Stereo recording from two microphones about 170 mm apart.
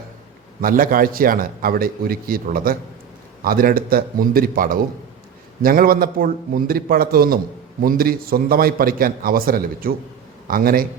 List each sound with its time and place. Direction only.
0.6 s a man's voice: 55° right (ahead or behind)